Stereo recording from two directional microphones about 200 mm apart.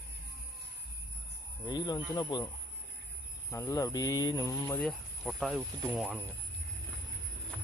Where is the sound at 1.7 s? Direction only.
20° left (ahead or behind).